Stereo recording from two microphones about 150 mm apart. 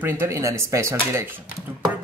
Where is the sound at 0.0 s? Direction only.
15° right (ahead or behind).